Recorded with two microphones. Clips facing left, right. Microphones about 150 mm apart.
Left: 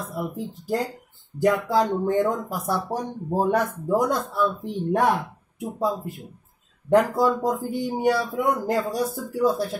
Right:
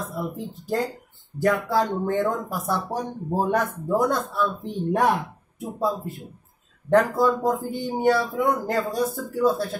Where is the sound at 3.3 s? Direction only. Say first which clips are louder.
Left 1 dB; 5° left (ahead or behind).